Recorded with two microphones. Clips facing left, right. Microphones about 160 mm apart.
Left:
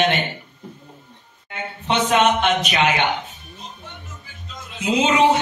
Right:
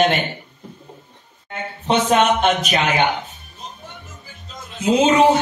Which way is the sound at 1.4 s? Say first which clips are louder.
Right 3 dB; 40° right (ahead or behind).